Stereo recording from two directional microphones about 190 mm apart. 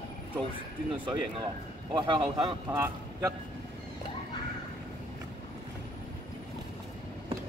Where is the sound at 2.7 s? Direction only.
10° right (ahead or behind).